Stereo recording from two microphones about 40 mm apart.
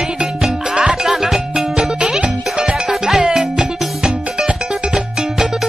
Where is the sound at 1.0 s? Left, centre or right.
Centre.